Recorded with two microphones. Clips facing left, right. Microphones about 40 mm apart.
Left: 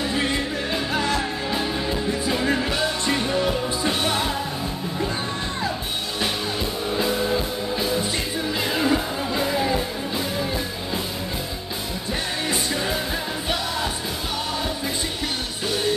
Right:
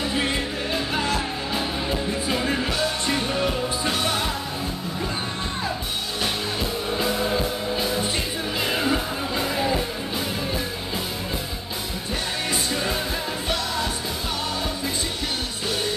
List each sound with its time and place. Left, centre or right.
0.0 s music: centre
6.9 s music: centre